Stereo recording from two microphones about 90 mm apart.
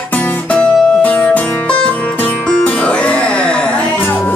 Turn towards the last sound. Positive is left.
turn(degrees=10)  # may be behind; listen again after turning